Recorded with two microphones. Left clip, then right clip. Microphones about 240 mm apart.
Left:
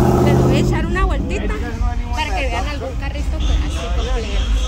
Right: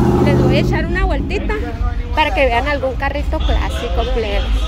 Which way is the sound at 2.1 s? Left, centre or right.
Centre.